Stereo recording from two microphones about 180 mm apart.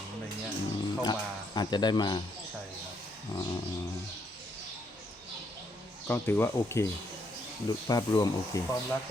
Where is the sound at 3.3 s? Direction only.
20° left (ahead or behind).